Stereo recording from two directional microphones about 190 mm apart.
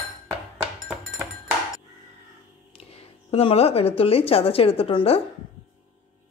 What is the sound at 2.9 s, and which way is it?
A woman's voice, 30° left (ahead or behind).